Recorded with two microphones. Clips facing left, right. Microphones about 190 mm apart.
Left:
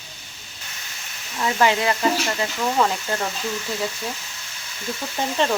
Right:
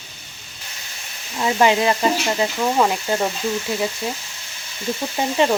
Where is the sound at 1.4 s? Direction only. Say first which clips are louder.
Right 3 dB; 20° right (ahead or behind).